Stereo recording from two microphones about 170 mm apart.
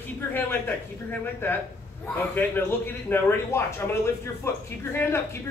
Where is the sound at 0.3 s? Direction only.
10° left (ahead or behind).